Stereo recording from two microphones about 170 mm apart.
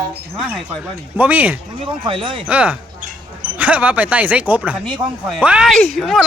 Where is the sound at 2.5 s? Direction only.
10° right (ahead or behind).